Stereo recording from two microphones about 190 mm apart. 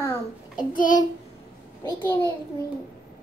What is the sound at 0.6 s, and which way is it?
Child singing, 45° left (ahead or behind).